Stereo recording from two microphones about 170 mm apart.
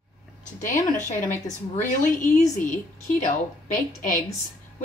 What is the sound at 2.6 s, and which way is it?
A woman's voice, 50° left (ahead or behind).